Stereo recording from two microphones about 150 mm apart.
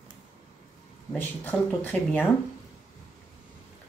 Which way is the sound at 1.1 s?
10° left (ahead or behind).